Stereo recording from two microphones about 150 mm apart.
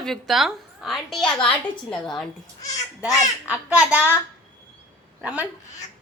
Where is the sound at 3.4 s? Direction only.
10° right (ahead or behind).